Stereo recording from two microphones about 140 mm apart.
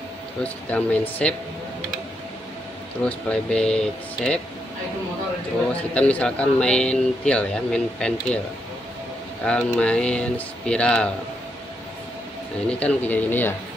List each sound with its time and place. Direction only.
0.4 s speech: 10° left (ahead or behind)
3.0 s speech: 10° left (ahead or behind)
5.9 s speech: 10° left (ahead or behind)
9.4 s speech: 5° left (ahead or behind)
12.6 s speech: 10° left (ahead or behind)